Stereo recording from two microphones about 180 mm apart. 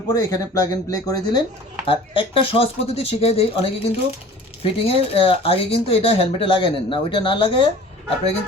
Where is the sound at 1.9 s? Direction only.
30° left (ahead or behind).